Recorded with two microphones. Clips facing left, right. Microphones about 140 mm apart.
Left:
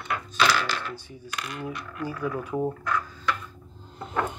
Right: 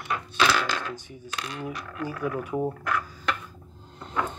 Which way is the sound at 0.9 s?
15° right (ahead or behind).